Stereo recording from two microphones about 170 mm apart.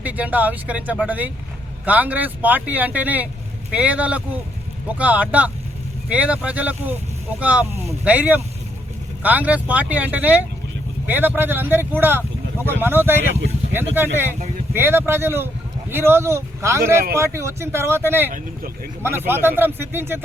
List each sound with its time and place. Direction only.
0.0 s speech: 10° right (ahead or behind)